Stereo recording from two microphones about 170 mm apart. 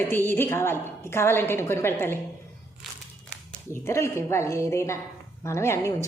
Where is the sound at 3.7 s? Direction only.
15° left (ahead or behind).